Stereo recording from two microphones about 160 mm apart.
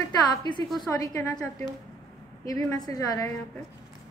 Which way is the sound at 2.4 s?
25° left (ahead or behind).